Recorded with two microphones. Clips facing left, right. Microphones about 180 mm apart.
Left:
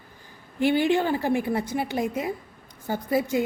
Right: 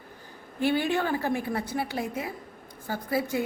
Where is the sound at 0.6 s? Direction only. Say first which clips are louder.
Left 4 dB; 15° left (ahead or behind).